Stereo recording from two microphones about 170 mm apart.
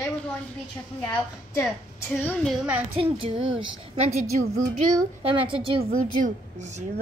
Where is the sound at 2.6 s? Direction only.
5° right (ahead or behind).